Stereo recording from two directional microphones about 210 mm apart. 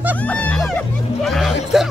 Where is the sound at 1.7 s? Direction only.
Centre (ahead or behind).